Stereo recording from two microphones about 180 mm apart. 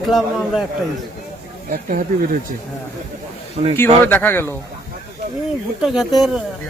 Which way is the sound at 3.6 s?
40° right (ahead or behind).